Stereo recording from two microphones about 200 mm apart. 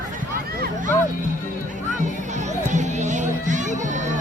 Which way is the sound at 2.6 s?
35° right (ahead or behind).